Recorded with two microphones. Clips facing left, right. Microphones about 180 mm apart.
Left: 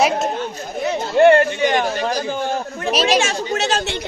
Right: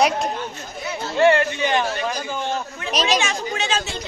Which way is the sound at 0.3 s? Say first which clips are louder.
Left 4 dB; 40° left (ahead or behind).